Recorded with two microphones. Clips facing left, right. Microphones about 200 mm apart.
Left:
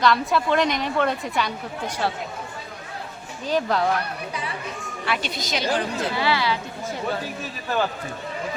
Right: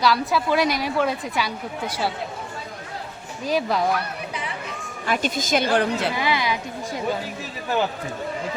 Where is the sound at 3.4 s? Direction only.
10° right (ahead or behind).